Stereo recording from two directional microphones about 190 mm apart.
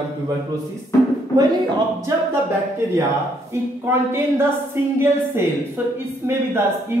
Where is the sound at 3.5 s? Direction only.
15° right (ahead or behind).